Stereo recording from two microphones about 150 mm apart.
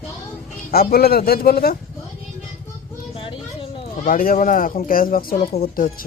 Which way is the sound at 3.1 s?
35° left (ahead or behind).